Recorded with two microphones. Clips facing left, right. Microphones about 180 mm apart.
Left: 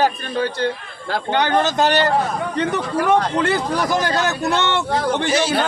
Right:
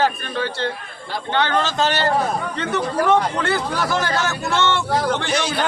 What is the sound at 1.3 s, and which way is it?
Speech, 15° left (ahead or behind).